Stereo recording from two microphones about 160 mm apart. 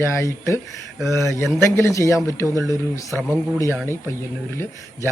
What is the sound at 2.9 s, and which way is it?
Speech, 15° left (ahead or behind).